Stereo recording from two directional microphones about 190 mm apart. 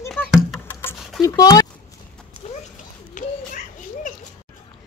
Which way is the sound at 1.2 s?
20° left (ahead or behind).